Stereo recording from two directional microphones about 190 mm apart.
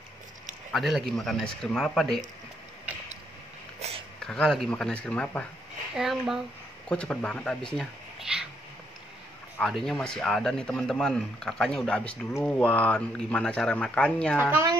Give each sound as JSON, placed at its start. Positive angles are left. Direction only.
{"t": 0.7, "sound": "a man's voice", "side_deg": 0}
{"t": 3.8, "sound": "a sound", "side_deg": -35}
{"t": 4.2, "sound": "a man's voice", "side_deg": 5}
{"t": 9.6, "sound": "a man's voice", "side_deg": 0}
{"t": 14.4, "sound": "a woman's voice", "side_deg": -15}